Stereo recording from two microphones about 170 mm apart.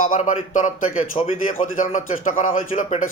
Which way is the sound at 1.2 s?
30° left (ahead or behind).